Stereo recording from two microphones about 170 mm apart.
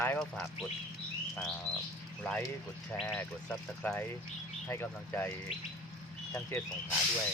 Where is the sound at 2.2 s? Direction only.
10° left (ahead or behind).